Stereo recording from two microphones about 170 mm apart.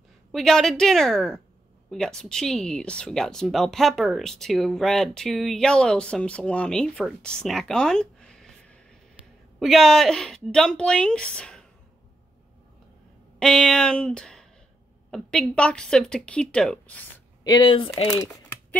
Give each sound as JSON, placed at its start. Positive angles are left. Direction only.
{"t": 0.3, "sound": "speech", "side_deg": 0}
{"t": 13.4, "sound": "speech", "side_deg": 5}
{"t": 17.4, "sound": "speech", "side_deg": 25}
{"t": 18.1, "sound": "crumpling", "side_deg": 10}